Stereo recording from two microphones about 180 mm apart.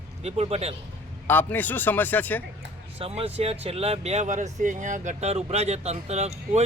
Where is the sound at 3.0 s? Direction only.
35° right (ahead or behind).